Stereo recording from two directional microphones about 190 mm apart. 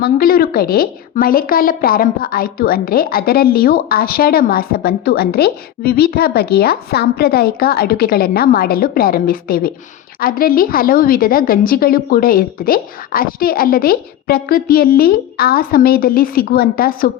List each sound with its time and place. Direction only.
0.0 s a woman's voice: 50° left (ahead or behind)